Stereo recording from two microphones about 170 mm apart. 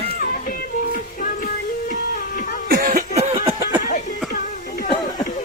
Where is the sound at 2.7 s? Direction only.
50° right (ahead or behind).